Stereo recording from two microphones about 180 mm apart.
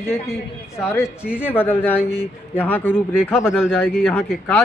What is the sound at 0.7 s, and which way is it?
Speech, 15° left (ahead or behind).